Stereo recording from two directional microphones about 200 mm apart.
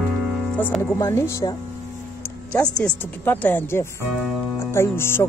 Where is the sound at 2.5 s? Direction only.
5° left (ahead or behind).